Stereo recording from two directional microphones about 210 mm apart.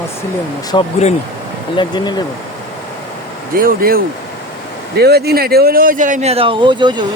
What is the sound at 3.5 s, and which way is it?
Speech, 45° right (ahead or behind).